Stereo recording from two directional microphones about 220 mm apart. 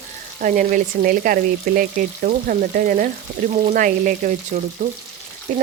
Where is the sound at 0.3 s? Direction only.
35° right (ahead or behind).